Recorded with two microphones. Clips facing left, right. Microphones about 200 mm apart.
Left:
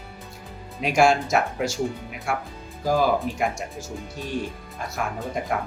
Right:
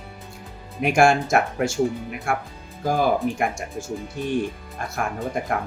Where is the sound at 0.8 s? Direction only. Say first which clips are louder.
Right 2 dB; 50° right (ahead or behind).